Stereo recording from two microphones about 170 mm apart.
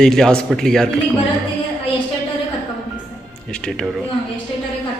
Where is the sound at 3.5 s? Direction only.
5° left (ahead or behind).